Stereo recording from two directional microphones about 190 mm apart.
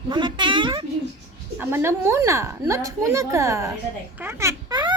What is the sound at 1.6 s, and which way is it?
A woman's voice, 10° right (ahead or behind).